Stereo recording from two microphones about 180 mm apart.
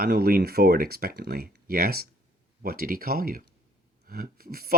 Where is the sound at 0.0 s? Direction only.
60° right (ahead or behind).